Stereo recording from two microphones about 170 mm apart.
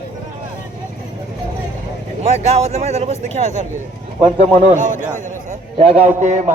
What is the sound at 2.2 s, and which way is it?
A man's voice, 40° right (ahead or behind).